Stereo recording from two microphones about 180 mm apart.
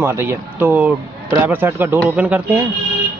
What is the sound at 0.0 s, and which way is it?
A man's voice, 10° right (ahead or behind).